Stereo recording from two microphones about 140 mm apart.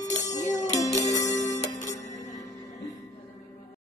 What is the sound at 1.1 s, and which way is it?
Music, 60° left (ahead or behind).